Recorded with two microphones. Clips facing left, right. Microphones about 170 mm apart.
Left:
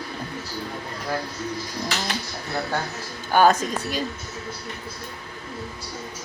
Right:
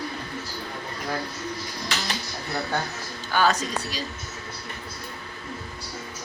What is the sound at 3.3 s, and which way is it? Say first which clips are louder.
Dishes: left 5 dB; 50° left (ahead or behind).